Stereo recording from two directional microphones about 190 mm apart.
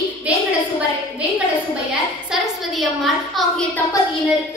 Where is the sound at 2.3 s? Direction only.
Centre (ahead or behind).